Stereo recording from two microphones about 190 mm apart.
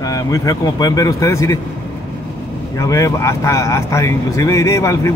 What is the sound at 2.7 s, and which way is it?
Speech, 15° left (ahead or behind).